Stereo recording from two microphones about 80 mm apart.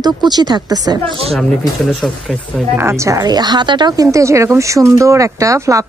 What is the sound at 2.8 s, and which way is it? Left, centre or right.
Speech, right.